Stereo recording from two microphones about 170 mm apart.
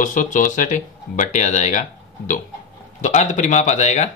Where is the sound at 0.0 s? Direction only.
50° left (ahead or behind).